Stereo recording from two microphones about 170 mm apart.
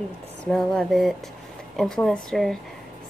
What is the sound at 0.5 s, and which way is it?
A woman's voice, 5° left (ahead or behind).